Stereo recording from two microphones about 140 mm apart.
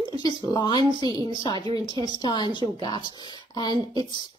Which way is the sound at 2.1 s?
30° left (ahead or behind).